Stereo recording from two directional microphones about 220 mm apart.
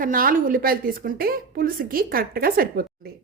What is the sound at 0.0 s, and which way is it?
A woman's voice, 40° right (ahead or behind).